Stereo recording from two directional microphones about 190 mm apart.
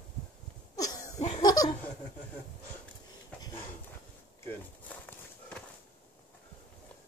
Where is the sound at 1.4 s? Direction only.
20° left (ahead or behind).